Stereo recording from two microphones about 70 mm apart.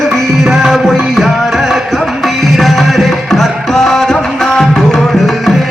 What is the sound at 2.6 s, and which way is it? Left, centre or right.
Music, centre.